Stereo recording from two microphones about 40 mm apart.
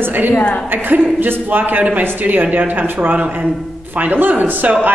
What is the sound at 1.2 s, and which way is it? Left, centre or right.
A woman's voice, right.